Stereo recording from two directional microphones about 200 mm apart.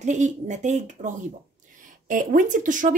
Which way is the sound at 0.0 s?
35° right (ahead or behind).